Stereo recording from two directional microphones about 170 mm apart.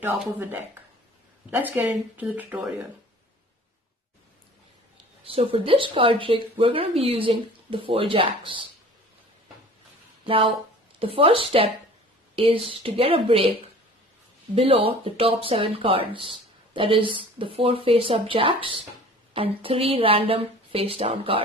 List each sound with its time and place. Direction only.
0.0 s speech: 10° right (ahead or behind)
5.2 s speech: 35° right (ahead or behind)
10.2 s speech: 30° right (ahead or behind)
14.5 s speech: 35° right (ahead or behind)